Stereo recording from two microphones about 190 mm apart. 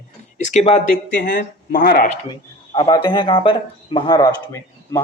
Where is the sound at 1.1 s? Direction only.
50° left (ahead or behind).